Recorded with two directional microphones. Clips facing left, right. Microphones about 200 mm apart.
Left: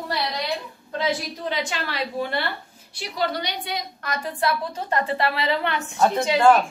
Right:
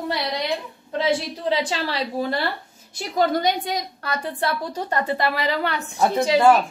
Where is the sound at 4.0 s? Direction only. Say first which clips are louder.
Right 1 dB; 30° right (ahead or behind).